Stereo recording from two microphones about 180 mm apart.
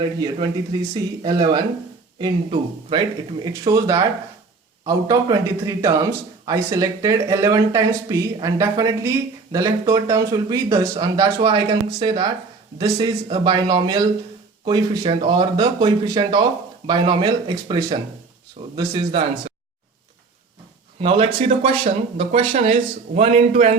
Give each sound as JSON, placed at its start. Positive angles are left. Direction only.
{"t": 0.0, "sound": "a man's voice", "side_deg": -25}
{"t": 21.0, "sound": "speech", "side_deg": -30}